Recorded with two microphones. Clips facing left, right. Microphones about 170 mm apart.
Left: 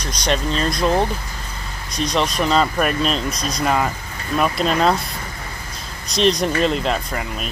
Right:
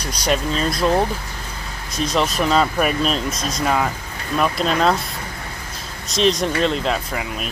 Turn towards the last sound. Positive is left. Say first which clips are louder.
# even
turn(degrees=0)  # may be behind; listen again after turning